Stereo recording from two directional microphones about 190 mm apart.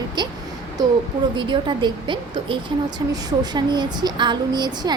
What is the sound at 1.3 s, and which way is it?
Speech, 25° right (ahead or behind).